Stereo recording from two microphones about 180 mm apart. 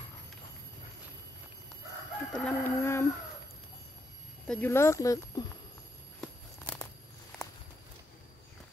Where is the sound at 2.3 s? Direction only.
10° left (ahead or behind).